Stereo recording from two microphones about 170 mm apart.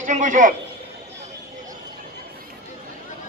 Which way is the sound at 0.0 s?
45° right (ahead or behind).